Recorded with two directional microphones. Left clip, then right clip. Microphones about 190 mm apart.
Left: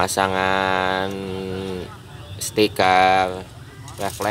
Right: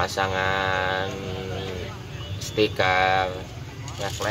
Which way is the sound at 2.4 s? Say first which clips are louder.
Left 4 dB; 45° left (ahead or behind).